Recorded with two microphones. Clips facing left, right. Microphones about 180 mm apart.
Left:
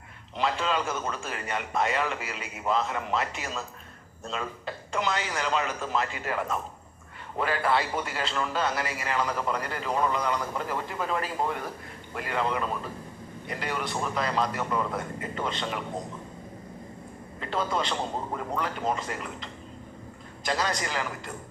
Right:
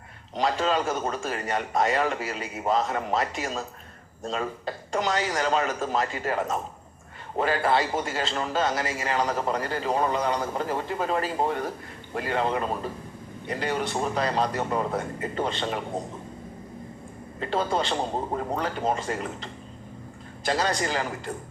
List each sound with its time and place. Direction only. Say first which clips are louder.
0.3 s a man's voice: right 3 dB; 40° right (ahead or behind)
17.4 s a man's voice: right 3 dB; 30° right (ahead or behind)